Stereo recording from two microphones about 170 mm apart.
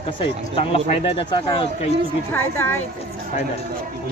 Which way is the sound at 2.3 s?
15° left (ahead or behind).